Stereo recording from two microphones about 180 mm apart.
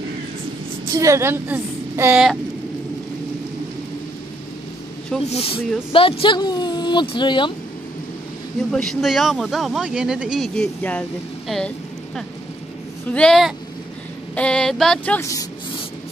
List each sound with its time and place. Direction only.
0.9 s a woman's voice: 15° right (ahead or behind)
5.2 s speech: 35° left (ahead or behind)
8.7 s speech: centre (ahead or behind)
13.1 s speech: 5° left (ahead or behind)